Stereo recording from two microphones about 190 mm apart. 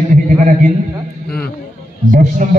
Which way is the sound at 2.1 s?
40° right (ahead or behind).